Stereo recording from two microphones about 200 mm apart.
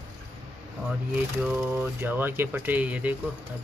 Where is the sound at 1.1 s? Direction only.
5° right (ahead or behind).